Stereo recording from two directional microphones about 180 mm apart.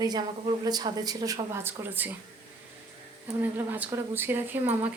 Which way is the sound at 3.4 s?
10° right (ahead or behind).